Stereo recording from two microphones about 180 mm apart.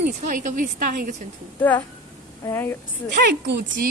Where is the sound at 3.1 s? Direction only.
50° right (ahead or behind).